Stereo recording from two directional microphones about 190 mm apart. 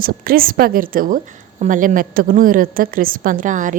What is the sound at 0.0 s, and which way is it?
A woman's voice, 50° right (ahead or behind).